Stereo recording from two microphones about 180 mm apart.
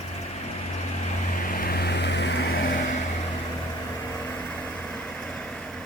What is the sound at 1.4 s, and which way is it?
Vehicle, 55° left (ahead or behind).